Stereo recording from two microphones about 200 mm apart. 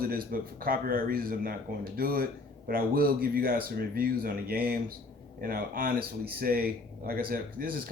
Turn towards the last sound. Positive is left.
turn(degrees=-45)  # may be behind; listen again after turning